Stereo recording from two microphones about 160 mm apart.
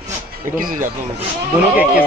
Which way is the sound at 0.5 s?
60° right (ahead or behind).